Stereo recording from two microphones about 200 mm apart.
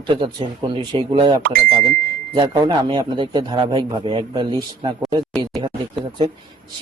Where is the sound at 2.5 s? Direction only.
20° right (ahead or behind).